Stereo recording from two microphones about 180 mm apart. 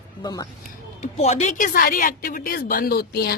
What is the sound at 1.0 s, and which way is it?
A man's voice, 40° left (ahead or behind).